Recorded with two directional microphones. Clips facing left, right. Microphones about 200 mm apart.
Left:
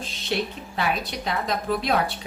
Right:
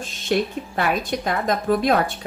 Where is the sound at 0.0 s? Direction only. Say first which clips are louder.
Right 5 dB; 45° right (ahead or behind).